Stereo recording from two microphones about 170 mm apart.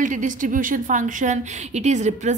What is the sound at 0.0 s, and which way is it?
A woman's voice, 50° right (ahead or behind).